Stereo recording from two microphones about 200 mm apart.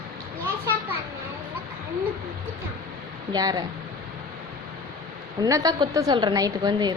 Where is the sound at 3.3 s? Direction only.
20° right (ahead or behind).